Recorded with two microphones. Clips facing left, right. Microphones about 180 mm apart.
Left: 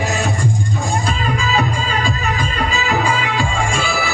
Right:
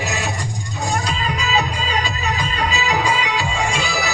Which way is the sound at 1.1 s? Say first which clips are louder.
Left 3 dB; 50° left (ahead or behind).